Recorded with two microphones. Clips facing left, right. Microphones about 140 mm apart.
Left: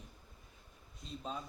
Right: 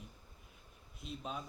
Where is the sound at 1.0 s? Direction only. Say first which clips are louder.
Right 1 dB; 5° right (ahead or behind).